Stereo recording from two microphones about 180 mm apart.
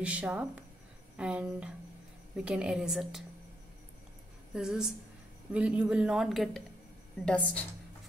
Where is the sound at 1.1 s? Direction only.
5° right (ahead or behind).